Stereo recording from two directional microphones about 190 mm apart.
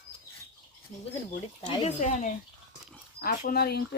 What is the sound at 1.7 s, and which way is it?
Speech, 35° left (ahead or behind).